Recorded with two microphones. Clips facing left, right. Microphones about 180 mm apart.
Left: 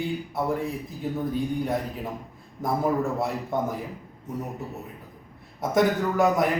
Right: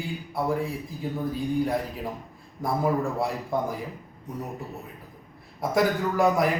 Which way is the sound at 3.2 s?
Centre (ahead or behind).